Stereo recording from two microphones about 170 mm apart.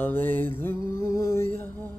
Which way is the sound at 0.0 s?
10° left (ahead or behind).